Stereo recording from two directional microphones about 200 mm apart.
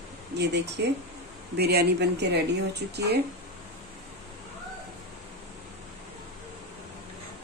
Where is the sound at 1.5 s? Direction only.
55° right (ahead or behind).